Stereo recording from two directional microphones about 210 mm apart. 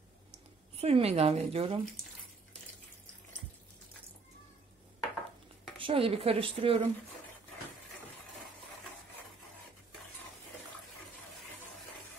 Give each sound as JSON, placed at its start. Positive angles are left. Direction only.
{"t": 0.7, "sound": "a woman's voice", "side_deg": -30}
{"t": 5.8, "sound": "a woman's voice", "side_deg": -25}